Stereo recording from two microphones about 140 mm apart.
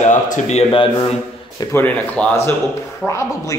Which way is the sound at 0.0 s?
60° left (ahead or behind).